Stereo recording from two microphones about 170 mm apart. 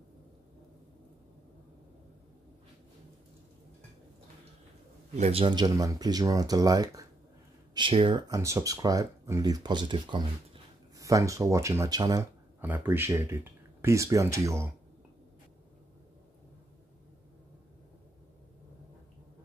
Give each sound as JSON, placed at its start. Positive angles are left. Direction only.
{"t": 5.1, "sound": "speech", "side_deg": -40}
{"t": 12.5, "sound": "speech", "side_deg": -10}